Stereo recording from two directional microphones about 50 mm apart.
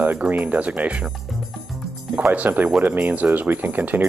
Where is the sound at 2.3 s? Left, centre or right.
Right.